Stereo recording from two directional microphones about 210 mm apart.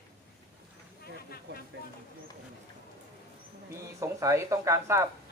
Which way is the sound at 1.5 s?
55° right (ahead or behind).